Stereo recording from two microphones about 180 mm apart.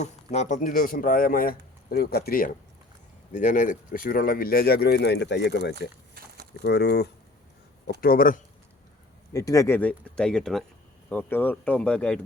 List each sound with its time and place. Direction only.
0.0 s speech: 40° left (ahead or behind); by 2.5 s 55° left (ahead or behind)
3.3 s speech: 45° left (ahead or behind); by 7.1 s 65° left (ahead or behind)
8.0 s speech: 50° left (ahead or behind)
9.3 s speech: 20° left (ahead or behind)